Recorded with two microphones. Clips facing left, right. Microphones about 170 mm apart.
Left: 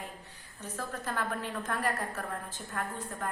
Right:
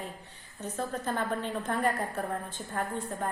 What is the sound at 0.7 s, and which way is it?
A woman's voice, 25° right (ahead or behind).